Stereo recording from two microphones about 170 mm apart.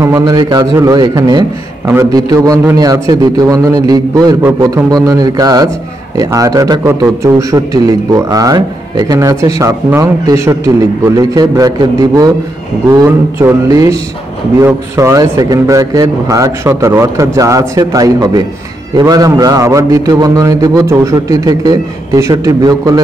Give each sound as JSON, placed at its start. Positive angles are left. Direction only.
{"t": 0.0, "sound": "a man's voice", "side_deg": -20}